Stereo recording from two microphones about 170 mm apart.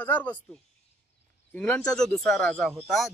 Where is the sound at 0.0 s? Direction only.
10° left (ahead or behind).